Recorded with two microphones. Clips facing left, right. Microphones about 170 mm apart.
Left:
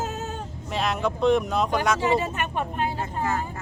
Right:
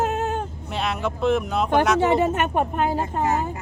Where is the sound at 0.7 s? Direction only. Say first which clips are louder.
Even; centre (ahead or behind).